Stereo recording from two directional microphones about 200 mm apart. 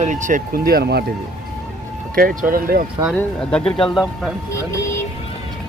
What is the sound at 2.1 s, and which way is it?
Speech, 45° right (ahead or behind).